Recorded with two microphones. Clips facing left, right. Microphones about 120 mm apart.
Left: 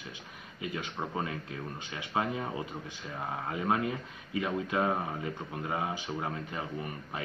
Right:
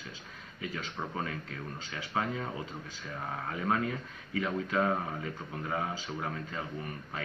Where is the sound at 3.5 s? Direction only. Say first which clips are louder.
Left 1 dB; 15° left (ahead or behind).